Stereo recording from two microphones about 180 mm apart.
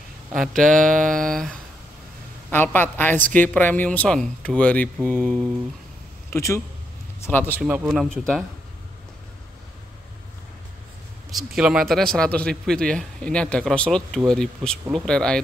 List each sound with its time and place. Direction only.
0.7 s a sound: 50° right (ahead or behind)
1.2 s a woman's voice: 5° left (ahead or behind)
6.3 s a woman's voice: 15° left (ahead or behind)
7.6 s speech: 5° right (ahead or behind)
11.2 s speech: centre (ahead or behind)
12.1 s speech: 5° left (ahead or behind)